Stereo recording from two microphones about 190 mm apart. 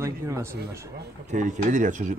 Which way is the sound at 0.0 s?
15° right (ahead or behind).